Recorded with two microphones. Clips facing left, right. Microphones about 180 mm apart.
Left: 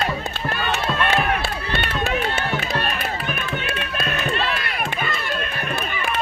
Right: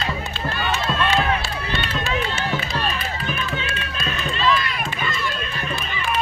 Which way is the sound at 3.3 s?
60° left (ahead or behind).